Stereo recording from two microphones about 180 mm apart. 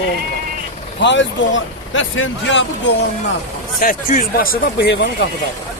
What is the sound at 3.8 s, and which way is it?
Speech, 50° left (ahead or behind).